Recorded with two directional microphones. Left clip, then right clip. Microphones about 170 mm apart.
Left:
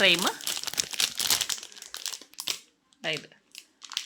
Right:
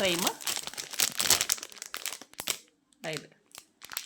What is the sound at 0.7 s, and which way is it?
Crumpling, 5° right (ahead or behind).